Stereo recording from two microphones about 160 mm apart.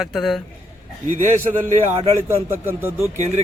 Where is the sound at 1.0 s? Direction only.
50° right (ahead or behind).